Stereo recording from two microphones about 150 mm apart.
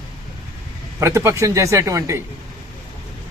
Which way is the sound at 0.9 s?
20° right (ahead or behind).